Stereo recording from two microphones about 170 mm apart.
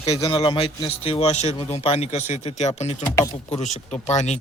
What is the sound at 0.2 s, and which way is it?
A man's voice, 25° left (ahead or behind).